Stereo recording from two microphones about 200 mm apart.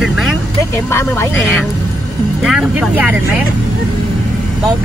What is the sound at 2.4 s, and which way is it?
Speech, 5° right (ahead or behind).